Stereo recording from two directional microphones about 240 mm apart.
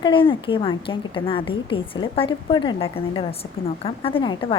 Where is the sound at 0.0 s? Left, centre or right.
Left.